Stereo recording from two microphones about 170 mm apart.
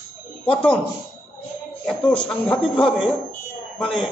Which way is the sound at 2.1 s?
5° left (ahead or behind).